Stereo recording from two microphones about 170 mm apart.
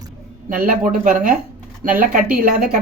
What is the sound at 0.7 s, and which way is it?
Speech, 50° right (ahead or behind).